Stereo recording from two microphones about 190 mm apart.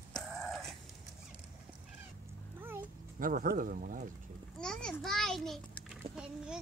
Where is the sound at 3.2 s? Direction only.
50° right (ahead or behind).